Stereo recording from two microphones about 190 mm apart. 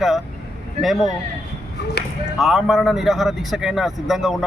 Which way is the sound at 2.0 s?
60° left (ahead or behind).